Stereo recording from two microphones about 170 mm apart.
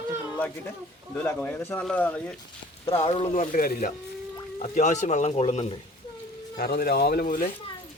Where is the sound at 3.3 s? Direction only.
50° left (ahead or behind).